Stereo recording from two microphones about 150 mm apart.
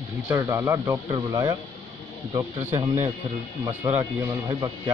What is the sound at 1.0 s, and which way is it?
Speech, 35° right (ahead or behind).